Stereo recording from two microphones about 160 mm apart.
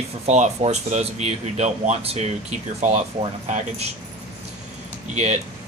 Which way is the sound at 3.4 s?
50° right (ahead or behind).